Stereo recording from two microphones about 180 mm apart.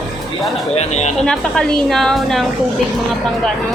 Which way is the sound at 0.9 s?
40° left (ahead or behind).